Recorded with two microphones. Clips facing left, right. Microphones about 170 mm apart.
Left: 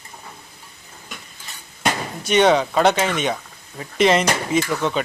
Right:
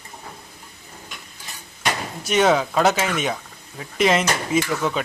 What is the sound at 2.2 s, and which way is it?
Speech, centre (ahead or behind).